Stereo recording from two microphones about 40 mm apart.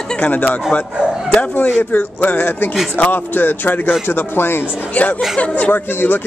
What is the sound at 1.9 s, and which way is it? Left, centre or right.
Speech, left.